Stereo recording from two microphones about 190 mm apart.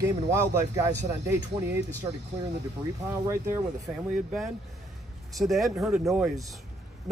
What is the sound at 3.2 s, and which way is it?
Speech, 15° right (ahead or behind).